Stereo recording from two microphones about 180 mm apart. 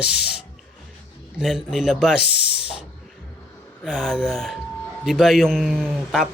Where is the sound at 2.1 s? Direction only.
65° left (ahead or behind).